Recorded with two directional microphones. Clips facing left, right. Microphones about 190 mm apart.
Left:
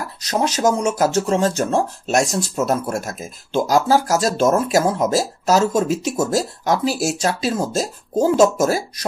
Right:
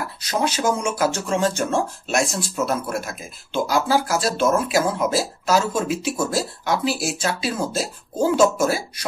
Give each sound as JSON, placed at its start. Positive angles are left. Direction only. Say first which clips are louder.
{"t": 0.2, "sound": "speech", "louder": "left 4 dB", "side_deg": 40}